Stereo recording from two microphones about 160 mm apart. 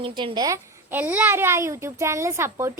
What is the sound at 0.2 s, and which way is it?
A woman's voice, 30° right (ahead or behind).